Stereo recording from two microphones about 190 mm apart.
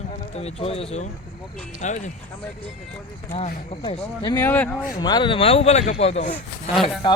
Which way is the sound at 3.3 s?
40° left (ahead or behind).